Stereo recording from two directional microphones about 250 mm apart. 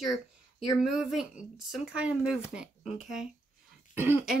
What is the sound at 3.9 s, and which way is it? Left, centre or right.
Throat clearing, centre.